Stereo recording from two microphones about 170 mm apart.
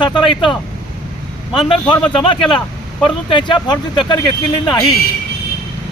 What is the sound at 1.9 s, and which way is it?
A man's voice, 30° left (ahead or behind).